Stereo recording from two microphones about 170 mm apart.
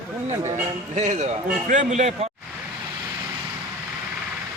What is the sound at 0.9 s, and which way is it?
A man's voice, 45° right (ahead or behind).